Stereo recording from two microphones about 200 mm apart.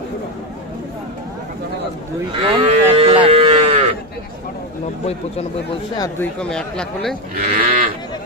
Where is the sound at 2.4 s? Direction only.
25° right (ahead or behind).